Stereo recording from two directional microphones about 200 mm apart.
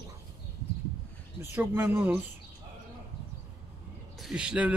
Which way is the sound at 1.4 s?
10° right (ahead or behind).